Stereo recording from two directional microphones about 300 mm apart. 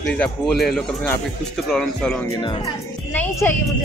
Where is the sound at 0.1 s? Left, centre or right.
Centre.